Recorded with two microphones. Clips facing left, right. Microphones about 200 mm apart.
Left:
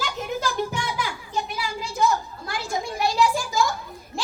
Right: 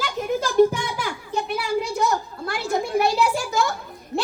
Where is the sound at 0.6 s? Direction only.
55° right (ahead or behind).